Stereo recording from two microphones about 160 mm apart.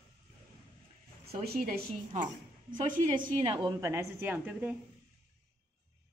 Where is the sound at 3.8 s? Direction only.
20° right (ahead or behind).